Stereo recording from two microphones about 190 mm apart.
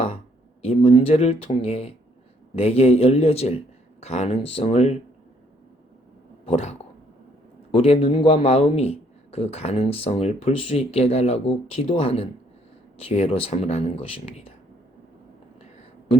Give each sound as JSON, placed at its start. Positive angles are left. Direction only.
{"t": 0.6, "sound": "a man's voice", "side_deg": 35}
{"t": 6.4, "sound": "a man's voice", "side_deg": 35}